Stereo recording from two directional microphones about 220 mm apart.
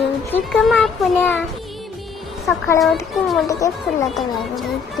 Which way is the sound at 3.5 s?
15° left (ahead or behind).